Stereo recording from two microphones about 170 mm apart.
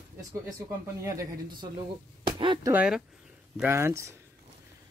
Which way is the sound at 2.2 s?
30° right (ahead or behind).